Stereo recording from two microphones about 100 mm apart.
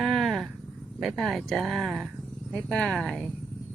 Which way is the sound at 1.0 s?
Centre (ahead or behind).